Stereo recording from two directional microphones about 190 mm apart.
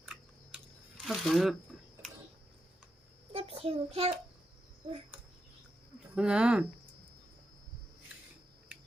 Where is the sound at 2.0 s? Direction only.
Centre (ahead or behind).